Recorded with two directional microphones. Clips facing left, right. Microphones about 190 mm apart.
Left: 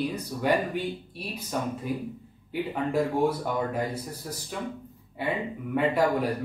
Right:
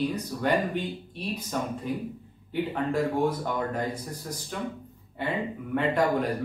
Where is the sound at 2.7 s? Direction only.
10° left (ahead or behind).